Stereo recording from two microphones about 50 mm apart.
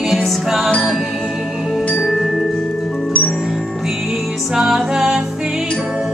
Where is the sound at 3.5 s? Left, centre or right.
Centre.